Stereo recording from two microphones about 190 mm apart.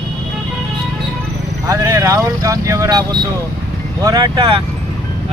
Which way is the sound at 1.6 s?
15° right (ahead or behind).